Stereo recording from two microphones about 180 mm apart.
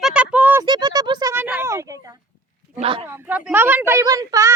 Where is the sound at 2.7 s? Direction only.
35° right (ahead or behind).